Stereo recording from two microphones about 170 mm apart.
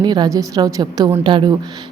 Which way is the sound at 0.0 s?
25° right (ahead or behind).